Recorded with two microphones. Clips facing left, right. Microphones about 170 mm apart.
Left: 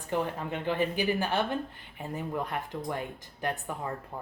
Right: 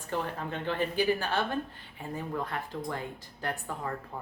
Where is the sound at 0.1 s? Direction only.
15° left (ahead or behind).